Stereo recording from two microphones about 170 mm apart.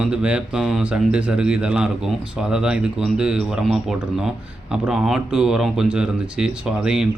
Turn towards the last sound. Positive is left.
turn(degrees=-5)  # may be behind; listen again after turning